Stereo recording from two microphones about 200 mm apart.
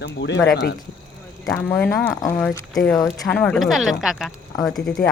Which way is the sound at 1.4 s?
5° left (ahead or behind).